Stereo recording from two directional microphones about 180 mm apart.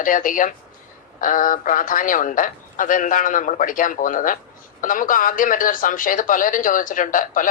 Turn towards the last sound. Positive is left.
turn(degrees=45)  # may be behind; listen again after turning